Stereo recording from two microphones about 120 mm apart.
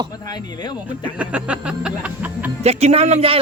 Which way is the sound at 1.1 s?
10° right (ahead or behind).